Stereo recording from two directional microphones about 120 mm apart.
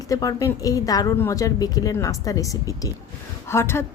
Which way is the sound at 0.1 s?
30° left (ahead or behind).